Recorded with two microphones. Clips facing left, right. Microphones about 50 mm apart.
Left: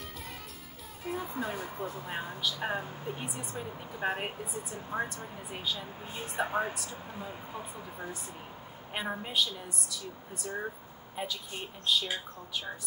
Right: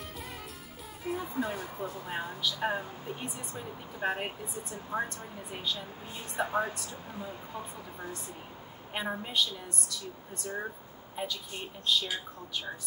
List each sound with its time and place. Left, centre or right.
1.0 s speech: centre
6.7 s speech: centre